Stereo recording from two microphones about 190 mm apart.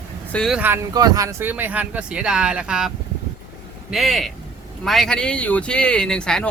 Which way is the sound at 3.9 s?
Centre (ahead or behind).